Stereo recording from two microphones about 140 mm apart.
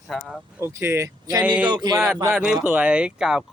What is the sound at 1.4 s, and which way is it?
Speech, 10° right (ahead or behind).